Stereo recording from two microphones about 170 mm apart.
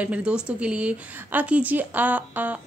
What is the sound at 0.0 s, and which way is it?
A woman's voice, 5° right (ahead or behind).